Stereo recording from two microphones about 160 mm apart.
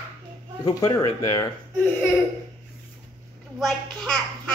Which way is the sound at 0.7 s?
20° left (ahead or behind).